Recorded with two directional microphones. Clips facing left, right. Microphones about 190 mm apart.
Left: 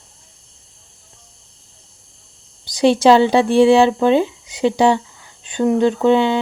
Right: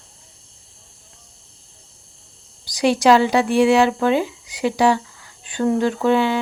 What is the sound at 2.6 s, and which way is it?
Speech, 25° left (ahead or behind).